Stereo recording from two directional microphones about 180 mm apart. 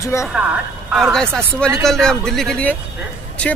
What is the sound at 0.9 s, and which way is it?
Speech, centre (ahead or behind).